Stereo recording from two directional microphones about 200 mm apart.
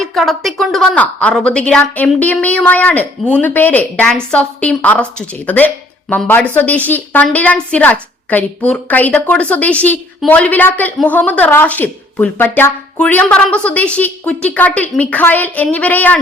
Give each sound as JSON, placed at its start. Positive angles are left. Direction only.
{"t": 0.0, "sound": "a woman's voice", "side_deg": 0}